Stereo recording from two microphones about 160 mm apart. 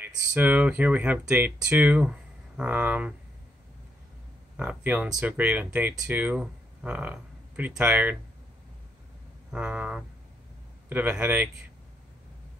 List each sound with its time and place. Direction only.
0.0 s speech: 10° right (ahead or behind)
4.6 s speech: 10° right (ahead or behind)
9.5 s speech: 10° right (ahead or behind)